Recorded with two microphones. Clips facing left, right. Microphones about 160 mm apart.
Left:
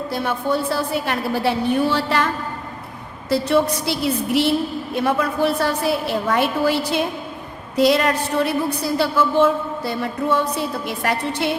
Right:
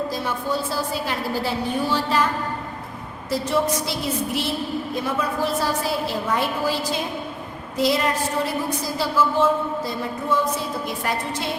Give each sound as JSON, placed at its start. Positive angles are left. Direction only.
{"t": 0.1, "sound": "a woman's voice", "side_deg": 65}
{"t": 3.2, "sound": "a woman's voice", "side_deg": 70}